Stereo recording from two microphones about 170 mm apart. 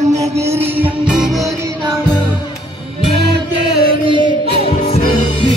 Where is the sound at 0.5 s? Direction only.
10° right (ahead or behind).